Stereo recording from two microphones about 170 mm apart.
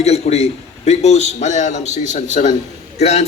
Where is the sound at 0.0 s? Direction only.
40° left (ahead or behind).